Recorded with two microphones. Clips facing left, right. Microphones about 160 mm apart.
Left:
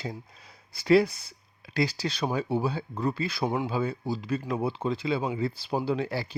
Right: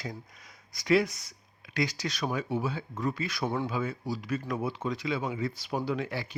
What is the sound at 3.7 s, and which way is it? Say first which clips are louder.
Speech: left 3 dB; 30° left (ahead or behind).